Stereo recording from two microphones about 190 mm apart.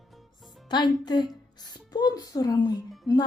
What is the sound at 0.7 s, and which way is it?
Speech, 20° left (ahead or behind).